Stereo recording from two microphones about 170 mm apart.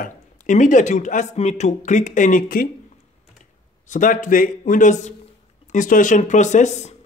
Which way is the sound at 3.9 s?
50° left (ahead or behind).